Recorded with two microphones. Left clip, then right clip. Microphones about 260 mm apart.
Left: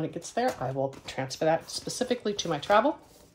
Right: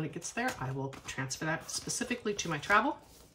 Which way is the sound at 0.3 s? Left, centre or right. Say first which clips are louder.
Left 7 dB; centre.